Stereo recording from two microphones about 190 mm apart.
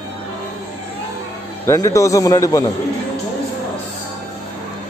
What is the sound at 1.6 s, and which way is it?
A man's voice, 15° left (ahead or behind).